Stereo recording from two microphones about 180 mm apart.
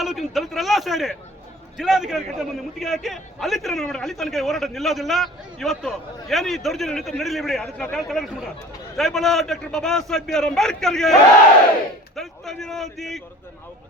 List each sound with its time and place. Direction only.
0.0 s a man's voice: centre (ahead or behind)